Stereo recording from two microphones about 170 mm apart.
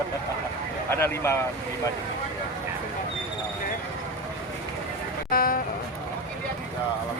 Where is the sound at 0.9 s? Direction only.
15° left (ahead or behind).